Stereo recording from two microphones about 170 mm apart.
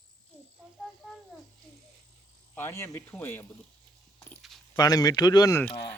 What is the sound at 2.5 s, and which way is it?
Speech, 15° left (ahead or behind).